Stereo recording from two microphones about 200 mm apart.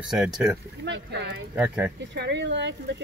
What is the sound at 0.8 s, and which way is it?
Speech, 60° right (ahead or behind).